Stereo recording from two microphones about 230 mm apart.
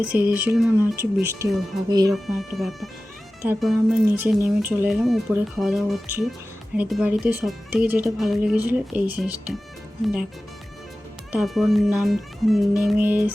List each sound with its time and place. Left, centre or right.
0.0 s speech: centre
2.1 s speech: centre
11.3 s speech: centre